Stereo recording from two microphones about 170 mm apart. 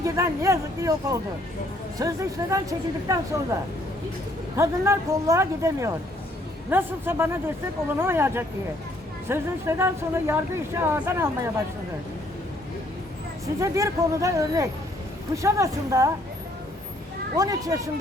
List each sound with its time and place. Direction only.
0.0 s speech: 20° right (ahead or behind)
4.5 s speech: 15° right (ahead or behind)
13.6 s speech: 15° right (ahead or behind)
17.3 s speech: 20° right (ahead or behind)